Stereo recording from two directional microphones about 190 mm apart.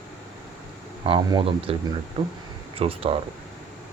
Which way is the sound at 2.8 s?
30° right (ahead or behind).